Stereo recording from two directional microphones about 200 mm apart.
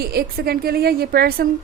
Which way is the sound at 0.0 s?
50° right (ahead or behind).